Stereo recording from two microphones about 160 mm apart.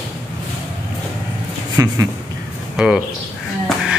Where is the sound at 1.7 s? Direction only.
20° right (ahead or behind).